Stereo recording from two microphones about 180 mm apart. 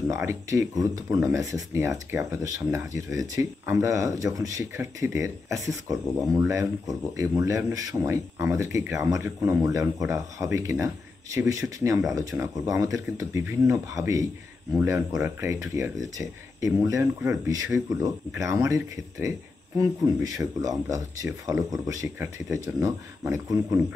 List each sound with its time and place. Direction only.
0.1 s speech: 15° right (ahead or behind)
12.1 s speech: 20° right (ahead or behind)